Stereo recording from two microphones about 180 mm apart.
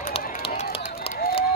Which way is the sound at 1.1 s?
60° left (ahead or behind).